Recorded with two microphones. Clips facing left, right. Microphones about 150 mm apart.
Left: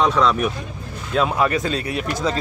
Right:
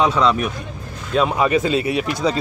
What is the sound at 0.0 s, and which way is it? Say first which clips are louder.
Speech: right 1 dB; centre (ahead or behind).